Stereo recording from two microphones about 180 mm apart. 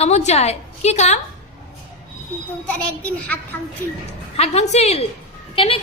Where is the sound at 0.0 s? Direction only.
40° left (ahead or behind).